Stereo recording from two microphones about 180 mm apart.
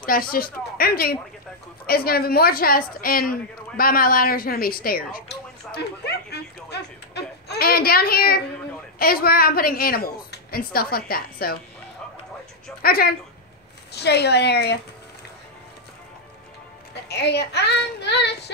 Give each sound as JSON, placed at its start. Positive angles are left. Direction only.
{"t": 0.0, "sound": "a woman's voice", "side_deg": 55}
{"t": 12.8, "sound": "a woman's voice", "side_deg": 55}
{"t": 17.1, "sound": "a child's voice", "side_deg": 70}